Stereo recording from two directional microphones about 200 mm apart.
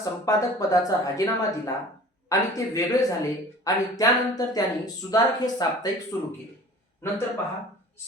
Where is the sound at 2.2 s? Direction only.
15° left (ahead or behind).